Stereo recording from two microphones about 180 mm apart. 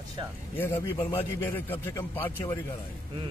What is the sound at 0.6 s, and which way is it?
A man's voice, 15° left (ahead or behind).